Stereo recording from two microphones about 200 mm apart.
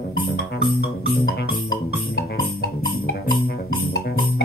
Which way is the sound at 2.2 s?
50° left (ahead or behind).